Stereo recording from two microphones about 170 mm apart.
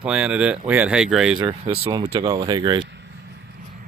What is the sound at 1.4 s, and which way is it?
Speech, 30° right (ahead or behind).